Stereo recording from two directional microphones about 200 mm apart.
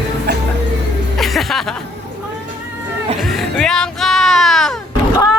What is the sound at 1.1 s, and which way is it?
Music, centre (ahead or behind).